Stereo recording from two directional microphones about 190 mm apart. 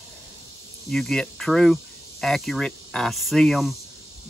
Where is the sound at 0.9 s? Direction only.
Centre (ahead or behind).